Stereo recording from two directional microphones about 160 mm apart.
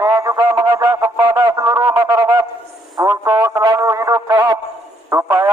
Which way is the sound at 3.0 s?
20° right (ahead or behind).